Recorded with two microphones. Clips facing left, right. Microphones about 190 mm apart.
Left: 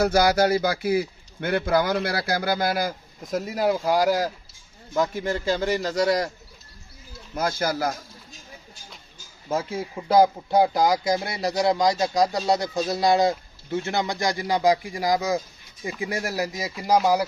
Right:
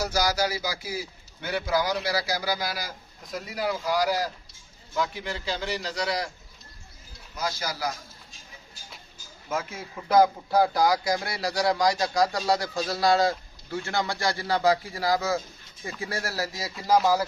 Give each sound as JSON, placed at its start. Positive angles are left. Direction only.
{"t": 0.0, "sound": "a man's voice", "side_deg": 55}
{"t": 7.3, "sound": "a man's voice", "side_deg": 55}
{"t": 9.5, "sound": "speech", "side_deg": 30}